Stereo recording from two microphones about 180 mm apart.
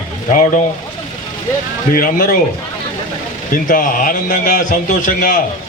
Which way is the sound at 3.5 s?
50° left (ahead or behind).